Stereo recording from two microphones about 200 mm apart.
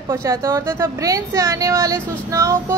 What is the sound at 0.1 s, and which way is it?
Speech, 15° right (ahead or behind).